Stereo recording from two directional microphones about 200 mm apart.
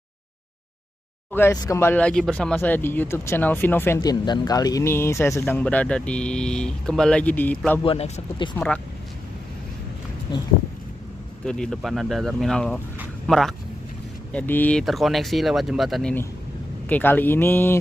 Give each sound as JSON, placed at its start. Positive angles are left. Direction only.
{"t": 1.3, "sound": "speech", "side_deg": 15}
{"t": 7.8, "sound": "speech", "side_deg": 25}
{"t": 8.5, "sound": "speech", "side_deg": 5}
{"t": 10.3, "sound": "speech", "side_deg": 20}
{"t": 11.4, "sound": "speech", "side_deg": 5}